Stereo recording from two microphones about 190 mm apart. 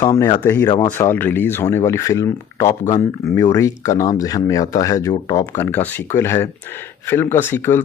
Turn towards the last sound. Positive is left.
turn(degrees=10)  # may be behind; listen again after turning